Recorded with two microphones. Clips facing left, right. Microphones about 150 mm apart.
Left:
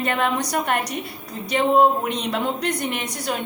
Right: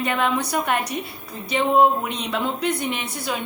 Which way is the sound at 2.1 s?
40° left (ahead or behind).